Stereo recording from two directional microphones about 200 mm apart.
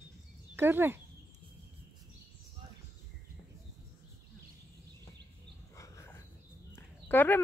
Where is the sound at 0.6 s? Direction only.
10° right (ahead or behind).